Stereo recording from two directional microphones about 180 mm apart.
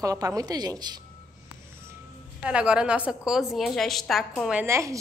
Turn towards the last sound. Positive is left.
turn(degrees=-15)  # may be behind; listen again after turning